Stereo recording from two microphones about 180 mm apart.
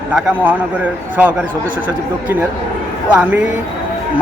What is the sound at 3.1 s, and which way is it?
Speech, 10° right (ahead or behind).